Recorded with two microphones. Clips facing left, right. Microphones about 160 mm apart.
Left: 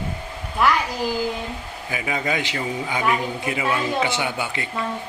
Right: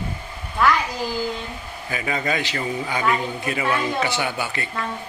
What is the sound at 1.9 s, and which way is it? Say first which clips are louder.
A man's voice: even; 15° left (ahead or behind).